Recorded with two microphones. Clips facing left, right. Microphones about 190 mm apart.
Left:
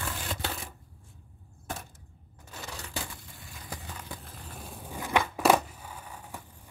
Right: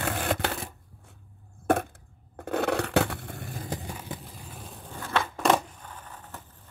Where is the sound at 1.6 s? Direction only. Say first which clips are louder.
Right 16 dB; 60° right (ahead or behind).